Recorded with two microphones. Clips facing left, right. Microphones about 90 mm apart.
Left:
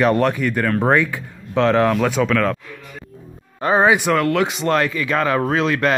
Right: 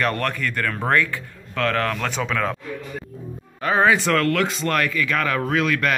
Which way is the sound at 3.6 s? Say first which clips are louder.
Left 3 dB; 20° left (ahead or behind).